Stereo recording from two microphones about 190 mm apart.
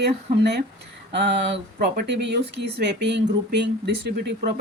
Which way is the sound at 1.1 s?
65° right (ahead or behind).